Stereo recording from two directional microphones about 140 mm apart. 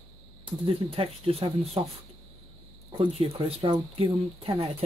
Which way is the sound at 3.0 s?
45° right (ahead or behind).